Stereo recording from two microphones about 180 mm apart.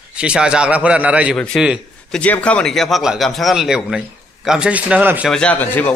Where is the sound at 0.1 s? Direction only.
5° right (ahead or behind).